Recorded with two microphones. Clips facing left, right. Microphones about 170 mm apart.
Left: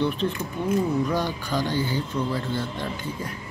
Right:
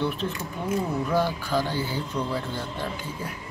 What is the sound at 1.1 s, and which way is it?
Speech, 5° right (ahead or behind).